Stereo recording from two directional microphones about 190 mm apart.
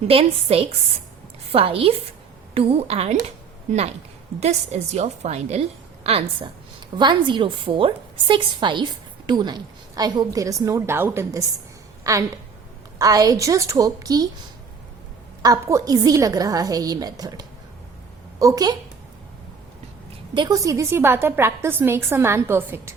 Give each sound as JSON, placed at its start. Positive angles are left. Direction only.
{"t": 0.1, "sound": "a woman's voice", "side_deg": -30}
{"t": 15.4, "sound": "a woman's voice", "side_deg": -15}
{"t": 20.3, "sound": "a woman's voice", "side_deg": -20}